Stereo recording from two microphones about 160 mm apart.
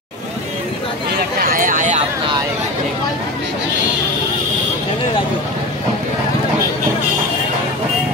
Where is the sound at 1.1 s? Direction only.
65° right (ahead or behind).